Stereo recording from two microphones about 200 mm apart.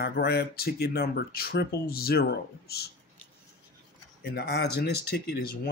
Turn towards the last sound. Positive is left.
turn(degrees=55)  # may be behind; listen again after turning